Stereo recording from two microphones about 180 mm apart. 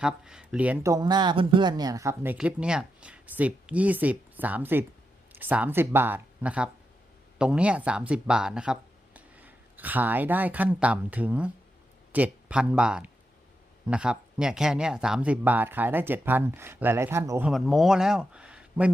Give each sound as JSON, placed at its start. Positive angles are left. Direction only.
{"t": 0.0, "sound": "speech", "side_deg": -5}
{"t": 17.5, "sound": "speech", "side_deg": 0}